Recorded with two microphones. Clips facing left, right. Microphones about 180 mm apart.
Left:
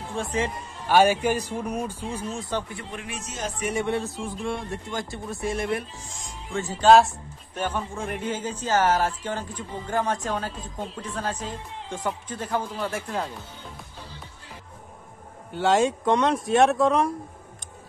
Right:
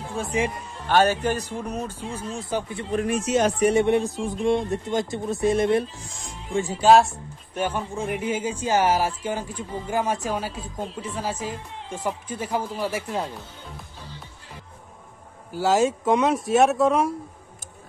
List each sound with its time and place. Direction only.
0.0 s speech: 5° right (ahead or behind)
0.8 s speech: 10° left (ahead or behind)
2.9 s speech: 45° right (ahead or behind)
3.3 s speech: 75° right (ahead or behind)
3.7 s speech: 20° right (ahead or behind)
6.5 s a man's voice: 10° right (ahead or behind)
15.5 s speech: centre (ahead or behind)